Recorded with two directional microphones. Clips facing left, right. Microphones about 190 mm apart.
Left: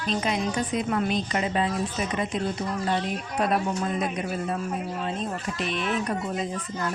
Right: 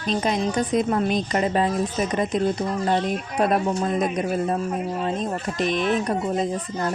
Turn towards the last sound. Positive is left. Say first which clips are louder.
# right 5 dB
turn(degrees=-35)  # may be behind; listen again after turning